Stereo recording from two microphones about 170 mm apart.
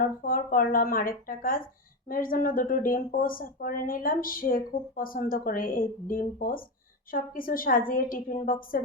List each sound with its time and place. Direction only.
0.0 s speech: 55° left (ahead or behind)